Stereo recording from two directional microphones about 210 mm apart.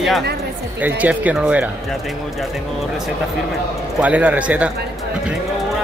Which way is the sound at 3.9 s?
5° right (ahead or behind).